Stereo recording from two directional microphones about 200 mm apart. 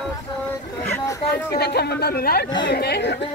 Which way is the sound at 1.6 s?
55° left (ahead or behind).